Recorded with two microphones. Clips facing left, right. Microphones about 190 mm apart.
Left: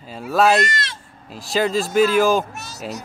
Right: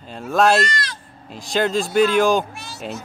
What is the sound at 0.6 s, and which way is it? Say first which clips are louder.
Speech: even; 25° left (ahead or behind).